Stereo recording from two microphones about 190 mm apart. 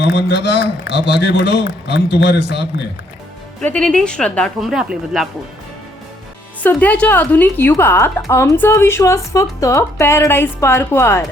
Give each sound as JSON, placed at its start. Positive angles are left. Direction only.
{"t": 0.0, "sound": "a man's voice", "side_deg": 60}
{"t": 3.6, "sound": "speech", "side_deg": 5}
{"t": 6.6, "sound": "speech", "side_deg": 10}